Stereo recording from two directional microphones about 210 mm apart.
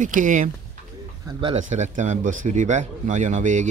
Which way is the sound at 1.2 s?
25° right (ahead or behind).